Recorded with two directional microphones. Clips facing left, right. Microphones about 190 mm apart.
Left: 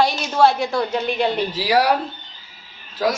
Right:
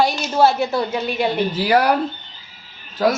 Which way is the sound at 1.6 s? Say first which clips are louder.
Right 1 dB; 55° right (ahead or behind).